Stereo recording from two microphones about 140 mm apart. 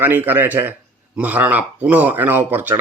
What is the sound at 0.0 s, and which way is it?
Speech, 15° right (ahead or behind).